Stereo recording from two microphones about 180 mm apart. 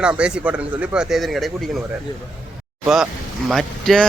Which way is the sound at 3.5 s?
Centre (ahead or behind).